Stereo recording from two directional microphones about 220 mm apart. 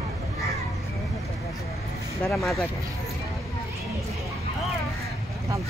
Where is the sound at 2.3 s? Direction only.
Centre (ahead or behind).